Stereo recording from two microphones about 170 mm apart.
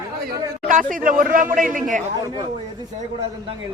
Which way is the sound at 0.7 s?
50° right (ahead or behind).